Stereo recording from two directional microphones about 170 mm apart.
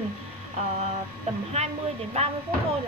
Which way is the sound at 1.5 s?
40° right (ahead or behind).